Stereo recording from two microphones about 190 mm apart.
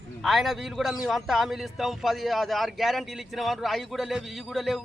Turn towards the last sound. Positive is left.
turn(degrees=0)  # may be behind; listen again after turning